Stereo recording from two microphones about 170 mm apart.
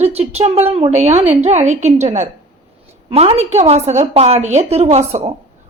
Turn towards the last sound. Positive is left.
turn(degrees=-40)  # may be behind; listen again after turning